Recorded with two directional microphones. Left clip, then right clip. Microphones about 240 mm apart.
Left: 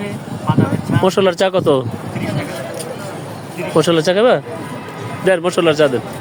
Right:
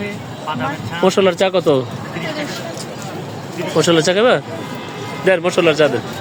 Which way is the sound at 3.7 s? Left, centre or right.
Centre.